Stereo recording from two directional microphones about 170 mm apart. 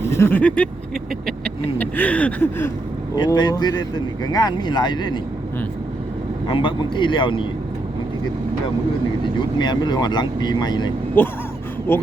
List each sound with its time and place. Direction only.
0.0 s speech: 15° left (ahead or behind)
3.2 s speech: 25° left (ahead or behind)
6.5 s speech: 30° left (ahead or behind)
9.6 s speech: 25° left (ahead or behind)
11.2 s speech: 10° left (ahead or behind)